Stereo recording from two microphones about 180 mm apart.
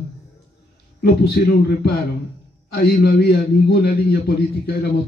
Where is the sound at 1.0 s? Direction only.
60° left (ahead or behind).